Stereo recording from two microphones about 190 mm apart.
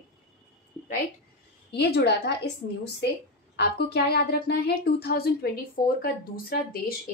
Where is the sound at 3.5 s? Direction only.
55° left (ahead or behind).